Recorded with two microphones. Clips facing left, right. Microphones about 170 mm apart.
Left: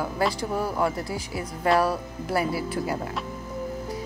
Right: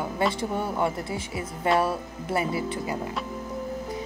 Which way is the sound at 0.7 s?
Centre (ahead or behind).